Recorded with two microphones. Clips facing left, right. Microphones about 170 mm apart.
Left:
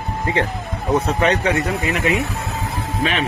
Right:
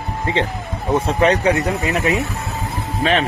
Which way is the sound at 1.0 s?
30° right (ahead or behind).